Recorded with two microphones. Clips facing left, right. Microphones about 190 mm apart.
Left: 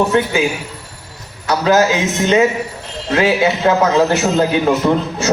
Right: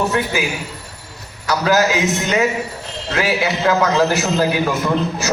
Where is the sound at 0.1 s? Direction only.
30° left (ahead or behind).